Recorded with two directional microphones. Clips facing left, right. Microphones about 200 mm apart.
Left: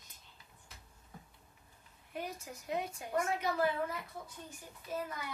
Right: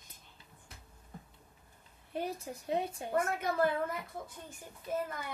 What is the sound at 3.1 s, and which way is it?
Speech, 55° right (ahead or behind).